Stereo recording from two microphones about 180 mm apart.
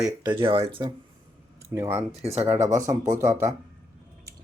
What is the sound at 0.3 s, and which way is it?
Speech, 30° right (ahead or behind).